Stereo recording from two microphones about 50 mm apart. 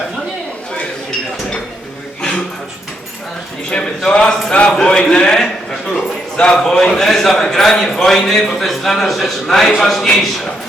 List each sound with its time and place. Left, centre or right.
3.7 s a man's voice: centre